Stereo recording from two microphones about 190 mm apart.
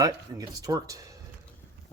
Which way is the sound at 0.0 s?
20° right (ahead or behind).